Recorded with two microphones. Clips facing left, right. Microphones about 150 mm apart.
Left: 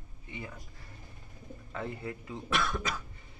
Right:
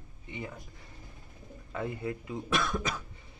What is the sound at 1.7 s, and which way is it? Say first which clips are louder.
Speech: right 3 dB; 15° right (ahead or behind).